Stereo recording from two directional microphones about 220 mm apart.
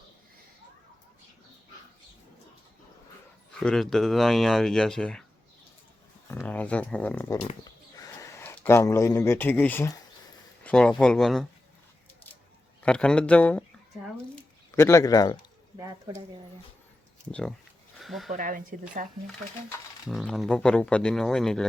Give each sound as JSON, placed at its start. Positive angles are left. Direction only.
{"t": 3.6, "sound": "speech", "side_deg": 5}
{"t": 6.2, "sound": "speech", "side_deg": 10}
{"t": 7.6, "sound": "a sound", "side_deg": 15}
{"t": 10.6, "sound": "speech", "side_deg": 5}
{"t": 12.8, "sound": "speech", "side_deg": 5}
{"t": 14.8, "sound": "speech", "side_deg": 15}
{"t": 18.0, "sound": "speech", "side_deg": 0}
{"t": 18.3, "sound": "speech", "side_deg": -40}
{"t": 20.1, "sound": "speech", "side_deg": 0}